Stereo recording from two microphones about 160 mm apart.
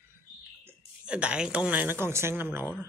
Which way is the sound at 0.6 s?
10° right (ahead or behind).